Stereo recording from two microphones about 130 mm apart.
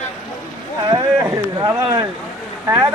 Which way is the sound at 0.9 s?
25° right (ahead or behind).